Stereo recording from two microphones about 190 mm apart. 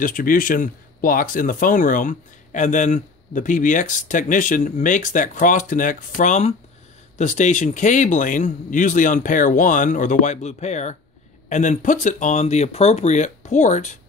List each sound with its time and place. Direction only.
0.0 s speech: 45° left (ahead or behind)